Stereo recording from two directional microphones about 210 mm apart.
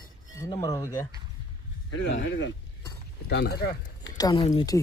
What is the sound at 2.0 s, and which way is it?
Speech, 60° left (ahead or behind).